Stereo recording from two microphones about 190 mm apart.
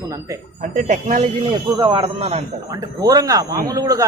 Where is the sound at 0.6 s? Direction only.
40° right (ahead or behind).